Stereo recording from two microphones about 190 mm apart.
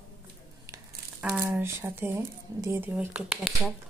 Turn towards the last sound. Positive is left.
turn(degrees=-5)  # may be behind; listen again after turning